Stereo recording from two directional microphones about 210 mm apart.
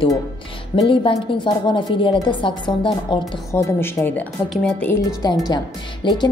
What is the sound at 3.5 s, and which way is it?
A woman's voice, 10° left (ahead or behind).